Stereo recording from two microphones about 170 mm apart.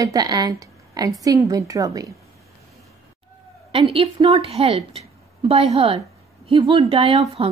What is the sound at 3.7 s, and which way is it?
A woman's voice, 30° right (ahead or behind).